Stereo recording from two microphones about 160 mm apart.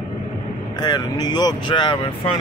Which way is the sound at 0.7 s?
25° left (ahead or behind).